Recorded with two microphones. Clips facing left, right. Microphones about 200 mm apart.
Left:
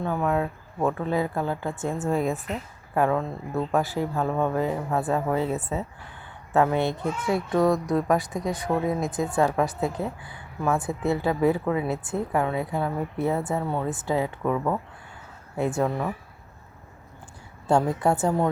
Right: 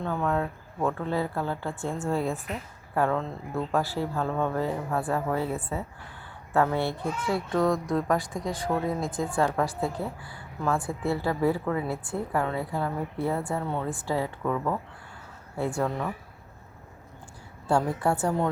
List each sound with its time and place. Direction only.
0.0 s a woman's voice: 10° left (ahead or behind)
17.7 s a woman's voice: 20° left (ahead or behind)